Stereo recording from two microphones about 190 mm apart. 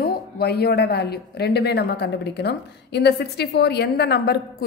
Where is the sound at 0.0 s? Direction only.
55° left (ahead or behind).